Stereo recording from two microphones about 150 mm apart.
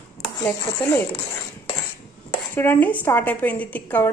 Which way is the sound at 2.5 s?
10° left (ahead or behind).